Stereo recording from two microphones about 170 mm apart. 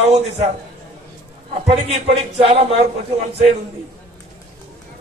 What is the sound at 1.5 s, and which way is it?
A man's voice, 35° right (ahead or behind).